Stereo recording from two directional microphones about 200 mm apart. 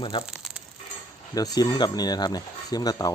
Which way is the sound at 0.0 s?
25° left (ahead or behind).